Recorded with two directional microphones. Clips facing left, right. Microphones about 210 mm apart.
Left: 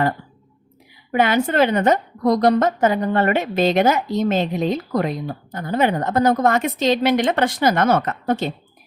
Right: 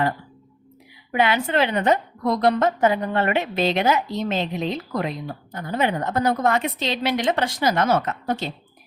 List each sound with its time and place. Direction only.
1.1 s a woman's voice: 45° left (ahead or behind)